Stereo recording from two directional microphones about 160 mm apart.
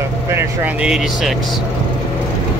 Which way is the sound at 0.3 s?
10° right (ahead or behind).